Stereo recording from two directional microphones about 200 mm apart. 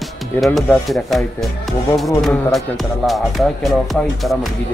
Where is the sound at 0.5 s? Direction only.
Centre (ahead or behind).